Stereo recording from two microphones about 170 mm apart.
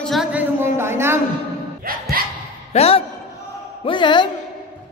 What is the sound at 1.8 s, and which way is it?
Music, 60° right (ahead or behind).